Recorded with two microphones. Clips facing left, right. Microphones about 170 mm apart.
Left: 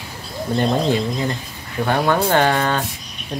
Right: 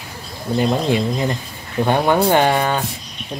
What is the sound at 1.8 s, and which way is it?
Speech, 20° right (ahead or behind).